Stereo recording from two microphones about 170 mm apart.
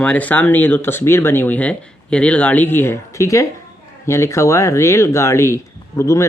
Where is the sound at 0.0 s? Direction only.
10° left (ahead or behind).